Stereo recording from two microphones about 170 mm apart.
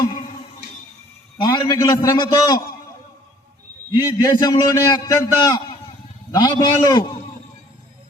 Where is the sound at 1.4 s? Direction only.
25° left (ahead or behind).